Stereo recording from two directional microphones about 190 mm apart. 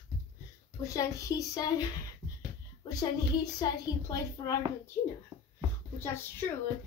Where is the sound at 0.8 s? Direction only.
15° left (ahead or behind).